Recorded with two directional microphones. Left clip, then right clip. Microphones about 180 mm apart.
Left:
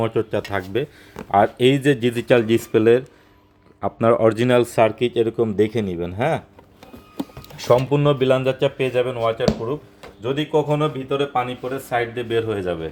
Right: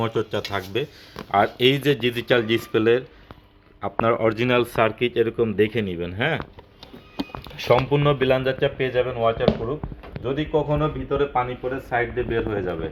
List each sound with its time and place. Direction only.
0.0 s speech: 35° left (ahead or behind)
7.7 s speech: 30° left (ahead or behind); by 9.3 s 50° left (ahead or behind)
10.5 s speech: 45° left (ahead or behind)